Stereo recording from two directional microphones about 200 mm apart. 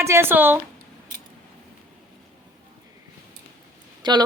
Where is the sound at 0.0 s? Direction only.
15° right (ahead or behind).